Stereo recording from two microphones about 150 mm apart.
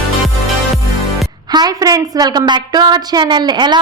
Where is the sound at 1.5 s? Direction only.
25° right (ahead or behind).